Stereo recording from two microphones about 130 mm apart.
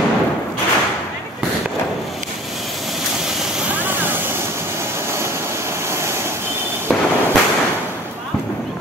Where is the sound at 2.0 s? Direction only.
Centre (ahead or behind).